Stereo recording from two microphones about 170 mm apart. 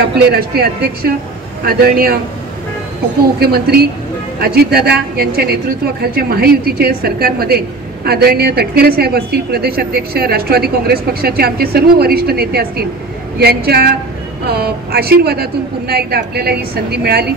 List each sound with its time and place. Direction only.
0.3 s a woman's voice: 65° right (ahead or behind)
3.3 s a woman's voice: 65° right (ahead or behind)